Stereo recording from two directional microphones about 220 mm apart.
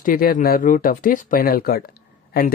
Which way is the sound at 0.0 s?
40° left (ahead or behind).